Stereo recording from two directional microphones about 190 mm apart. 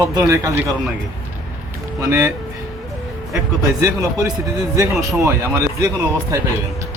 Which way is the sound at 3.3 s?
15° right (ahead or behind).